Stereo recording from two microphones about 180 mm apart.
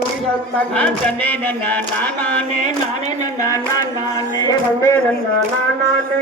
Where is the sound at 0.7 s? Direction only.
5° left (ahead or behind).